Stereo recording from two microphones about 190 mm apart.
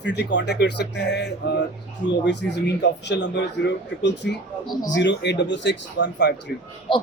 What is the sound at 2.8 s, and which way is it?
A man's voice, 65° left (ahead or behind).